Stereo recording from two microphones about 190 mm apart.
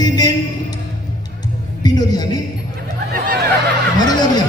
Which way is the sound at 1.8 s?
20° left (ahead or behind).